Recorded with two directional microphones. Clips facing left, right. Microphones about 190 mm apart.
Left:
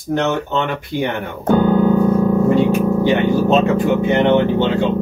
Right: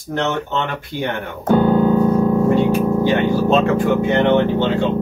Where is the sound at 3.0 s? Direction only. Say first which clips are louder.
Left 1 dB; 20° left (ahead or behind).